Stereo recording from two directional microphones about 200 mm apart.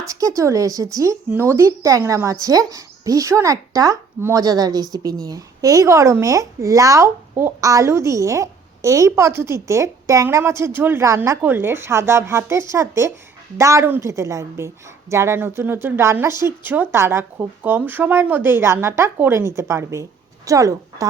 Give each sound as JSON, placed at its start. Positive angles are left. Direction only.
{"t": 0.0, "sound": "speech", "side_deg": -15}